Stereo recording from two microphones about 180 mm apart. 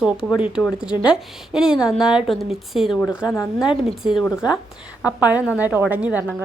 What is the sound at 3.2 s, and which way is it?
Speech, 15° left (ahead or behind).